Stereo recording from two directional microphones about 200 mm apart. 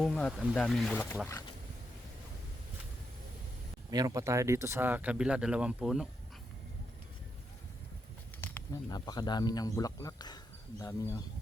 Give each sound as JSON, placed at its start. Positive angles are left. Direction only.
{"t": 0.0, "sound": "speech", "side_deg": 5}
{"t": 3.9, "sound": "speech", "side_deg": -15}
{"t": 8.4, "sound": "speech", "side_deg": 15}